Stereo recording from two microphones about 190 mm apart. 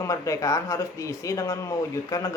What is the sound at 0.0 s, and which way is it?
Speech, 15° left (ahead or behind).